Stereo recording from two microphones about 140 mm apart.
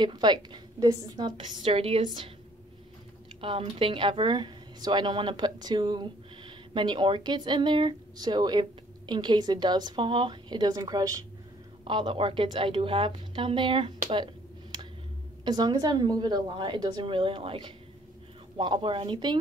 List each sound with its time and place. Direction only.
0.0 s speech: 30° right (ahead or behind)
1.3 s speech: 40° right (ahead or behind)
3.3 s speech: 40° right (ahead or behind); by 11.2 s 25° right (ahead or behind)
11.8 s a woman's voice: 35° right (ahead or behind)